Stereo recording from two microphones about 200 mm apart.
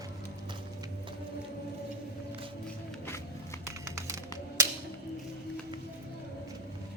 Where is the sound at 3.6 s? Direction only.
15° right (ahead or behind).